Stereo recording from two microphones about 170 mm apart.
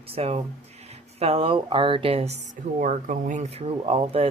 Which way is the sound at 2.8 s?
50° right (ahead or behind).